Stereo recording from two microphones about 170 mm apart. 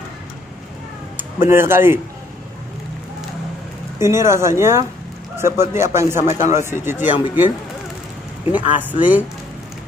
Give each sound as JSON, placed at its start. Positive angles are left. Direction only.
{"t": 1.5, "sound": "speech", "side_deg": -15}
{"t": 4.0, "sound": "speech", "side_deg": -15}
{"t": 6.2, "sound": "speech", "side_deg": 45}
{"t": 6.6, "sound": "speech", "side_deg": -15}